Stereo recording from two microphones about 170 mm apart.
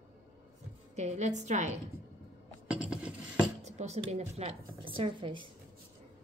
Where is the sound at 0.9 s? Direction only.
40° right (ahead or behind).